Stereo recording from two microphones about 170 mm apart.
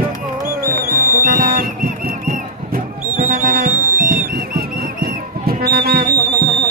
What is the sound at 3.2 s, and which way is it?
Music, 50° right (ahead or behind).